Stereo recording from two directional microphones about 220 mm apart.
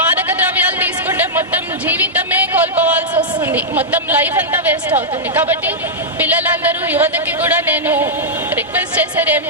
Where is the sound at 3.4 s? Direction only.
10° right (ahead or behind).